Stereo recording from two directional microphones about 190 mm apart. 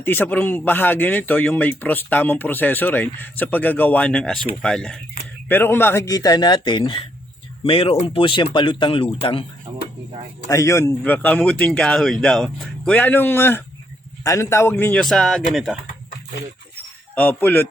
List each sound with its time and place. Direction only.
0.0 s speech: 10° left (ahead or behind); by 9.4 s 30° left (ahead or behind)
9.7 s a sound: 20° right (ahead or behind)
10.5 s a man's voice: 15° left (ahead or behind); by 15.8 s centre (ahead or behind)
17.2 s speech: 10° left (ahead or behind)